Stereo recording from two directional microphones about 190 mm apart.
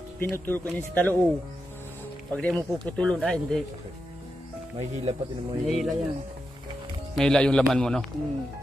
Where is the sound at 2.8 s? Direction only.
5° left (ahead or behind).